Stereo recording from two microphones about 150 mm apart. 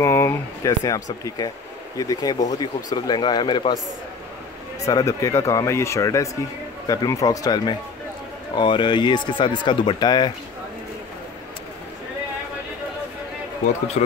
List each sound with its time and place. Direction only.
0.0 s speech: 15° left (ahead or behind)
4.8 s speech: 20° left (ahead or behind)
14.0 s speech: 55° left (ahead or behind)